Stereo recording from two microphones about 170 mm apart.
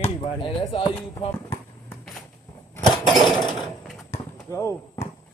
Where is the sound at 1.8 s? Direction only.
5° left (ahead or behind).